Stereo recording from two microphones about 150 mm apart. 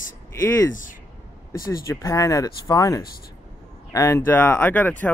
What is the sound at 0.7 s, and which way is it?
Speech, 60° left (ahead or behind).